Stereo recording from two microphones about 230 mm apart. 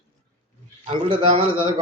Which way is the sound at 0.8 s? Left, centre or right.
Right.